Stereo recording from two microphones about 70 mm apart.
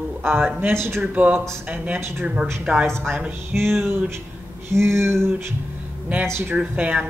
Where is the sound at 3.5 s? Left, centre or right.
Right.